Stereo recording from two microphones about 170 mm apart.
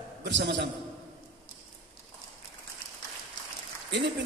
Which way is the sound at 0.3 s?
90° right.